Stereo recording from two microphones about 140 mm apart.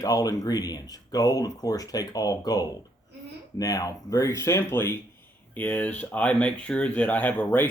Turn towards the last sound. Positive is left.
turn(degrees=10)  # may be behind; listen again after turning